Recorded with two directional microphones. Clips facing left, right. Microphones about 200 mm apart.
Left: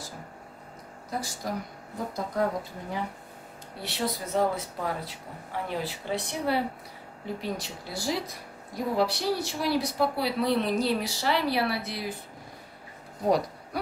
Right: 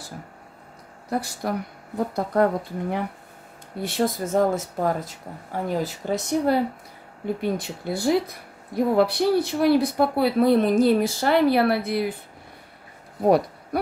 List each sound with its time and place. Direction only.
1.1 s a woman's voice: 65° right (ahead or behind)
3.8 s a woman's voice: 50° right (ahead or behind)